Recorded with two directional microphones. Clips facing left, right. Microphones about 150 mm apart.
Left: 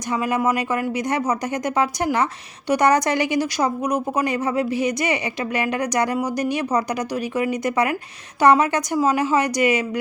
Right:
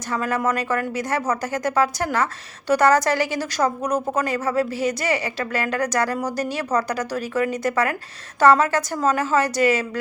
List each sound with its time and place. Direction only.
0.1 s a woman's voice: 15° left (ahead or behind)